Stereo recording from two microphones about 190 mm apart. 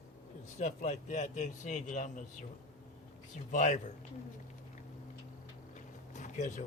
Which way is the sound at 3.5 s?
40° left (ahead or behind).